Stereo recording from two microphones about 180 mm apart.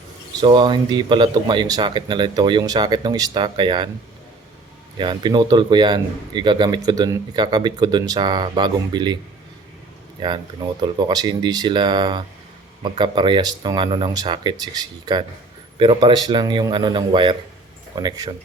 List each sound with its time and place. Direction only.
0.3 s a man's voice: 25° right (ahead or behind)
4.9 s a man's voice: 25° right (ahead or behind)
10.2 s a man's voice: 25° right (ahead or behind)